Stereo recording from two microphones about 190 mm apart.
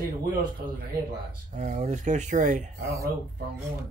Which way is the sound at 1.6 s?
40° right (ahead or behind).